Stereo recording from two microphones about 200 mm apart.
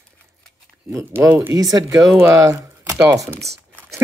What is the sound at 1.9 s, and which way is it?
Speech, 5° right (ahead or behind).